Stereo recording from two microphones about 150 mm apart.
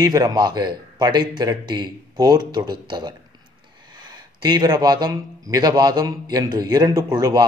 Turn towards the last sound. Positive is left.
turn(degrees=-25)  # may be behind; listen again after turning